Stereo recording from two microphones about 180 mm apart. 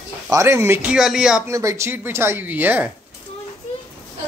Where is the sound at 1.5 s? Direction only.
15° right (ahead or behind).